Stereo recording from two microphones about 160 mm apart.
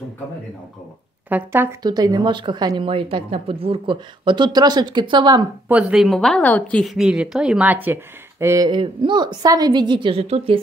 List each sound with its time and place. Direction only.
1.3 s speech: 15° right (ahead or behind)
1.8 s a woman's voice: 25° right (ahead or behind)
5.7 s a woman's voice: 5° right (ahead or behind)
8.6 s a woman's voice: 30° right (ahead or behind)